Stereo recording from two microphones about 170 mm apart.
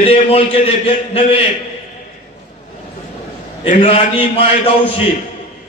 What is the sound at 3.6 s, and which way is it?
Speech, 40° left (ahead or behind).